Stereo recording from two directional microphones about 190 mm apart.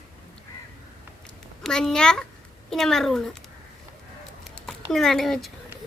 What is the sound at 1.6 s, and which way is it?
Speech, 5° left (ahead or behind).